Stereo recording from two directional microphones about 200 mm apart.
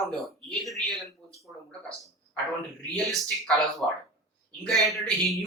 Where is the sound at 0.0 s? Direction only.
Centre (ahead or behind).